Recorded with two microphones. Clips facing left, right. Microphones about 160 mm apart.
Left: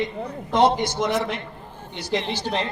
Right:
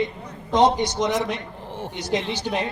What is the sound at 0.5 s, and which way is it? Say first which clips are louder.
Speech: right 1 dB; 15° right (ahead or behind).